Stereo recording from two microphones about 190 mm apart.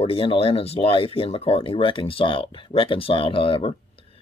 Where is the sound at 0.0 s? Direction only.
30° left (ahead or behind).